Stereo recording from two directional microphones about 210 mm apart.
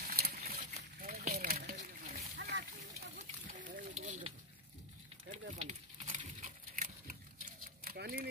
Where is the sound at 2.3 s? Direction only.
55° right (ahead or behind).